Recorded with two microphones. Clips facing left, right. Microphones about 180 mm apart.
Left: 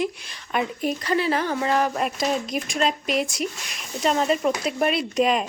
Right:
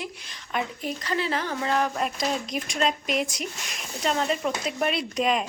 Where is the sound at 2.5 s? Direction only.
40° left (ahead or behind).